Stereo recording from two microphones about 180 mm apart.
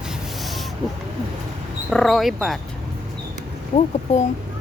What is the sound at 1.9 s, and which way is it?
Speech, centre (ahead or behind).